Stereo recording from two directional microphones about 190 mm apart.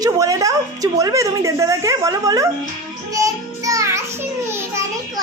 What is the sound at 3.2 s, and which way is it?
Music, 15° right (ahead or behind).